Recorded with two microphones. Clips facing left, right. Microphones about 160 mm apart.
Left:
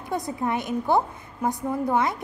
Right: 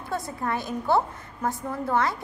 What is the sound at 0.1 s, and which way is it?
A woman's voice, 20° left (ahead or behind).